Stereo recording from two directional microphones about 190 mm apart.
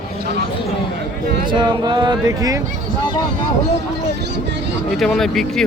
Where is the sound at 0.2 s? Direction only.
60° right (ahead or behind).